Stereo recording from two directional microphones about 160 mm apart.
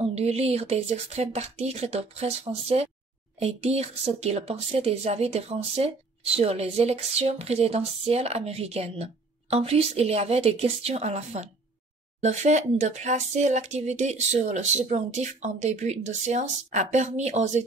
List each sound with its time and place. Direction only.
0.0 s speech: 40° right (ahead or behind)